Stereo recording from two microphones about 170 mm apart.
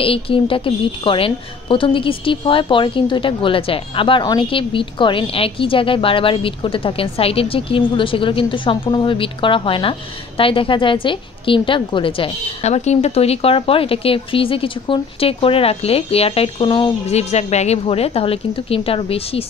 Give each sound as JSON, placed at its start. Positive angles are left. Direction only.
{"t": 0.0, "sound": "a woman's voice", "side_deg": 30}